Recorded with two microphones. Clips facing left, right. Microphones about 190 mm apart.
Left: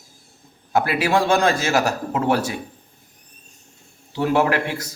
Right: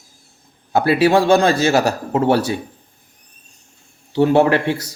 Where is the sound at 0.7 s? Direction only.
30° right (ahead or behind).